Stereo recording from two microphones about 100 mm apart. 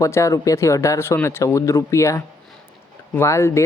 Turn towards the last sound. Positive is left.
turn(degrees=30)  # may be behind; listen again after turning